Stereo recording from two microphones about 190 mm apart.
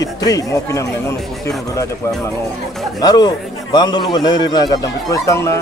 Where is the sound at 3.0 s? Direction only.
20° left (ahead or behind).